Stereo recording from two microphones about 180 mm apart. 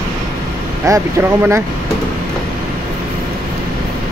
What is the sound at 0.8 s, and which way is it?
Speech, 15° right (ahead or behind).